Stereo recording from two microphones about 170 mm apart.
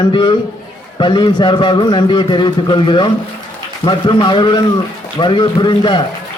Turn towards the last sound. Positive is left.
turn(degrees=30)  # may be behind; listen again after turning